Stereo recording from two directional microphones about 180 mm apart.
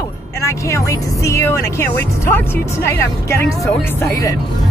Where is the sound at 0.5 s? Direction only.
15° left (ahead or behind).